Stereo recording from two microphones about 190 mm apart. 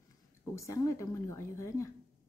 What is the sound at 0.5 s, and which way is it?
Speech, 15° left (ahead or behind).